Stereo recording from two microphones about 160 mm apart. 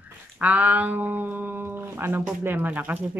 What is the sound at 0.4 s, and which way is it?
Speech, 10° right (ahead or behind).